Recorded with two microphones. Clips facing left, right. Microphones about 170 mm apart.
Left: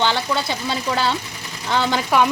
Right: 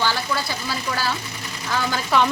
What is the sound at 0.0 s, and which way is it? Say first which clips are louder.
Speech: left 3 dB; 20° left (ahead or behind).